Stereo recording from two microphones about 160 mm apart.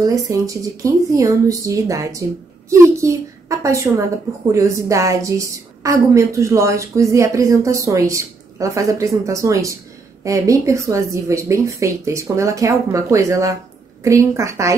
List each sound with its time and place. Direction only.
0.0 s a woman's voice: 20° right (ahead or behind)